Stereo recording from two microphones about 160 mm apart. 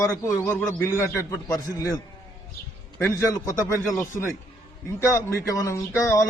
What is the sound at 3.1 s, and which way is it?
Speech, 20° left (ahead or behind).